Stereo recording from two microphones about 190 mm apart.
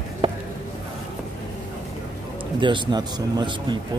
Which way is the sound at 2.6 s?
25° right (ahead or behind).